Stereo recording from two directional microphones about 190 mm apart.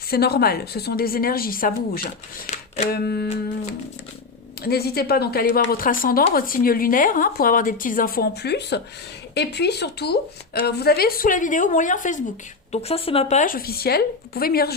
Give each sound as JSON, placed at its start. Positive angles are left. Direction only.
{"t": 0.1, "sound": "speech", "side_deg": 55}
{"t": 2.9, "sound": "a sound", "side_deg": 55}
{"t": 4.6, "sound": "speech", "side_deg": 55}